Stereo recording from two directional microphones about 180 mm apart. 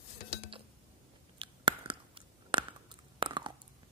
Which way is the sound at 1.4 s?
25° right (ahead or behind).